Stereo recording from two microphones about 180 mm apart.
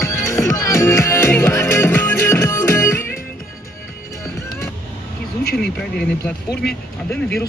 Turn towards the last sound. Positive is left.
turn(degrees=5)  # may be behind; listen again after turning